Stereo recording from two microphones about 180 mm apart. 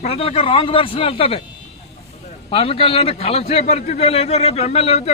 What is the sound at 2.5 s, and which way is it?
A man's voice, 30° left (ahead or behind).